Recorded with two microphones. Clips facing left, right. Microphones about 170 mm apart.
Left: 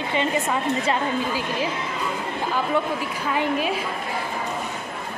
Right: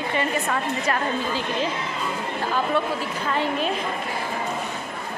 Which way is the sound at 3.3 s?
10° left (ahead or behind).